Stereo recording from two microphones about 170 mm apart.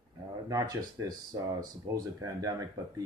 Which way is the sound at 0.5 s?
20° right (ahead or behind).